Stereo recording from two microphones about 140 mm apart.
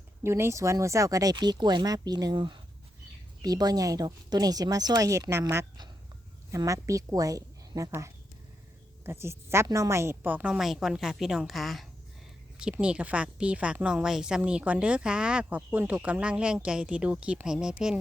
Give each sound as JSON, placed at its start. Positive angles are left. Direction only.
{"t": 0.2, "sound": "a woman's voice", "side_deg": -20}